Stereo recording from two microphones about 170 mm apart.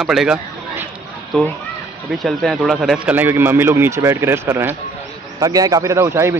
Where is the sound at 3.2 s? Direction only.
10° right (ahead or behind).